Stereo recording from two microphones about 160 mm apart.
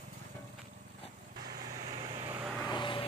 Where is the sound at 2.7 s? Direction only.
30° left (ahead or behind).